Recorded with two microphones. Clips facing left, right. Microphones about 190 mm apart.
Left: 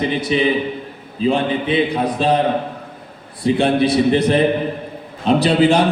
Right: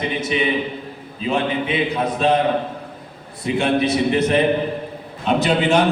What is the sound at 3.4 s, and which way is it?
Speech, 30° left (ahead or behind).